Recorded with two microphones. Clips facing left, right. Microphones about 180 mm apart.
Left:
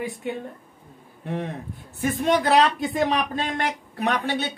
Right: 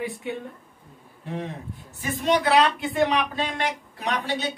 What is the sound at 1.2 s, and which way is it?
Speech, 55° left (ahead or behind).